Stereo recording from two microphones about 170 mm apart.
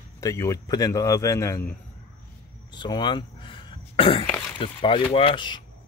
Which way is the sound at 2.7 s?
25° left (ahead or behind).